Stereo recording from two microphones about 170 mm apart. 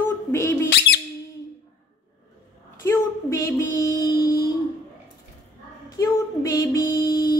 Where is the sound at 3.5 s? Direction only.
20° left (ahead or behind).